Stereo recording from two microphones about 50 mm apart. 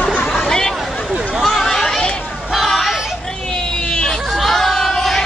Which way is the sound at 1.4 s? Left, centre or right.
Centre.